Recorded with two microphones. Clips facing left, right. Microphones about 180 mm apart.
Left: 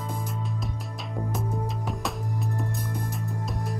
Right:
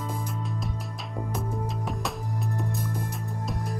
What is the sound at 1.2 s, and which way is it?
Music, centre (ahead or behind).